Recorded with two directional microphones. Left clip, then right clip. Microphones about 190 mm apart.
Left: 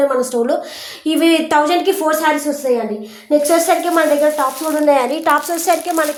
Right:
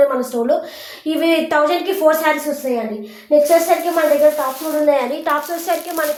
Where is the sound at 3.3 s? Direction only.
50° left (ahead or behind).